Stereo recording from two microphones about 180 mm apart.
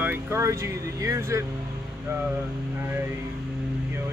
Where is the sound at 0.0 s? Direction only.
10° right (ahead or behind).